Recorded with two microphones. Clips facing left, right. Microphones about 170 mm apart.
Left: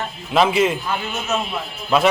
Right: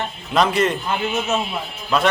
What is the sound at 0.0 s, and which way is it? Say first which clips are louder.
A man's voice: left 1 dB; centre (ahead or behind).